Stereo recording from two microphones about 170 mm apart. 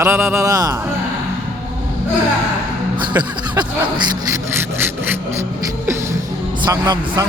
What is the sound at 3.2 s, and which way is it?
Speech, 25° right (ahead or behind).